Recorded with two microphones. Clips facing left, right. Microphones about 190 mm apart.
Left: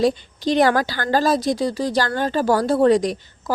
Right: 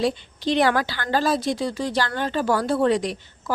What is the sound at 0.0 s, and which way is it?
A woman's voice, 40° left (ahead or behind).